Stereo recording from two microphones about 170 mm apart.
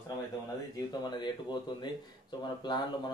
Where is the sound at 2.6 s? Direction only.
25° left (ahead or behind).